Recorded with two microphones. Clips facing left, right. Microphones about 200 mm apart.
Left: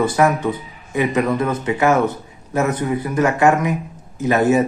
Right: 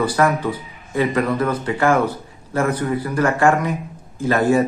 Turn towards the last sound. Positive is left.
turn(degrees=20)  # may be behind; listen again after turning